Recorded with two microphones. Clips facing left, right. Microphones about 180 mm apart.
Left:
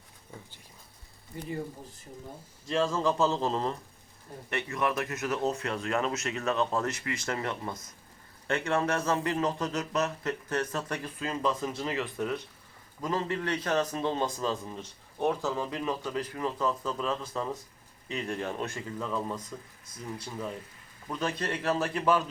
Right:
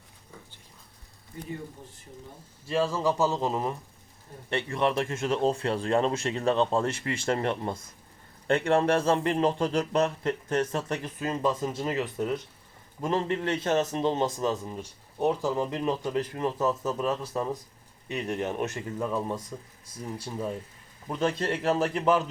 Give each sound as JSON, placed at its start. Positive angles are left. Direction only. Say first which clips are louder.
{"t": 2.6, "sound": "speech", "louder": "right 1 dB", "side_deg": -5}
{"t": 4.4, "sound": "a man's voice", "louder": "right 4 dB", "side_deg": -30}
{"t": 19.9, "sound": "a man's voice", "louder": "right 3 dB", "side_deg": -30}